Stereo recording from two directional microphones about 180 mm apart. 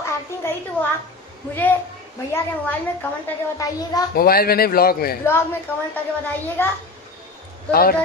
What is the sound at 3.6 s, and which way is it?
Speech, 20° left (ahead or behind).